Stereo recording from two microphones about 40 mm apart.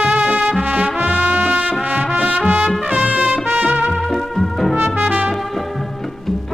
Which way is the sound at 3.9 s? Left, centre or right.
Centre.